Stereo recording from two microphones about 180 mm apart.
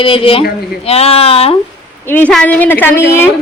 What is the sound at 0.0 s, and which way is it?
Speech, 30° left (ahead or behind).